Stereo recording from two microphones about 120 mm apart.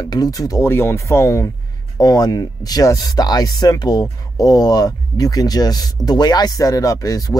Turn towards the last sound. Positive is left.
turn(degrees=30)  # may be behind; listen again after turning